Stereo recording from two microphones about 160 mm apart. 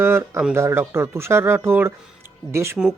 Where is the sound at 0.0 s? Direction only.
15° right (ahead or behind).